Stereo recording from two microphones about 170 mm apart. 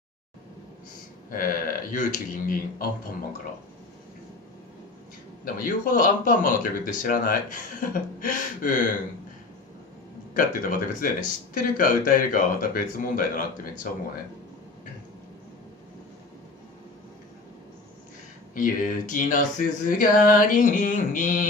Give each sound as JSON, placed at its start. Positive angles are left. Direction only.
{"t": 1.3, "sound": "speech", "side_deg": 55}
{"t": 5.4, "sound": "speech", "side_deg": 55}
{"t": 10.3, "sound": "speech", "side_deg": 50}
{"t": 18.5, "sound": "speech", "side_deg": 50}